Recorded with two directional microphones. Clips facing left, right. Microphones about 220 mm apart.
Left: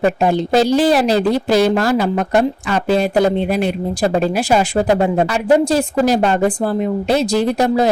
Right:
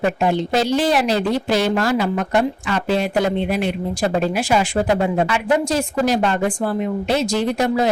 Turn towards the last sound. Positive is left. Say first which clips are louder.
# left 4 dB
turn(degrees=35)  # may be behind; listen again after turning